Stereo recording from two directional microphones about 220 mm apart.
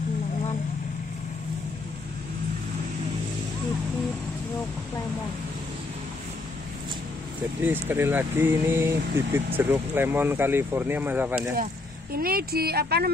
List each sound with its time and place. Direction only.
7.6 s speech: 10° right (ahead or behind)
12.1 s speech: 45° right (ahead or behind)